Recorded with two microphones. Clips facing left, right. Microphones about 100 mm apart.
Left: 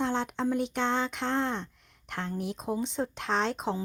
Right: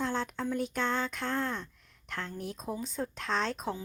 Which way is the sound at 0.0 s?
25° left (ahead or behind).